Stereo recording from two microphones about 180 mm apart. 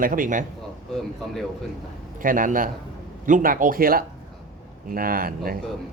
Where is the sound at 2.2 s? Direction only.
50° right (ahead or behind).